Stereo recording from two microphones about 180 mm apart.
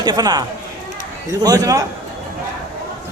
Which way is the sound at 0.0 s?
25° right (ahead or behind).